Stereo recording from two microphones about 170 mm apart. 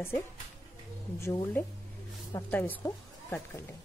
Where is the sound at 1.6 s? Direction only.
10° left (ahead or behind).